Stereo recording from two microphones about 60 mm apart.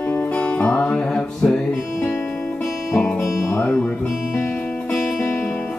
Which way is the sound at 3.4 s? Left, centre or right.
Left.